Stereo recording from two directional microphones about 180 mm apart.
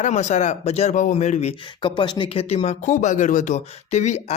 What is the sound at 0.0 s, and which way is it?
Speech, 40° left (ahead or behind).